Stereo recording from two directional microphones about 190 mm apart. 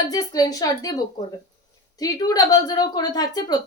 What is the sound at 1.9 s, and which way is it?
A woman's voice, 20° left (ahead or behind).